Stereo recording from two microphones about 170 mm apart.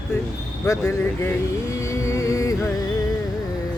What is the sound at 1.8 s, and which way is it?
Music, 15° left (ahead or behind).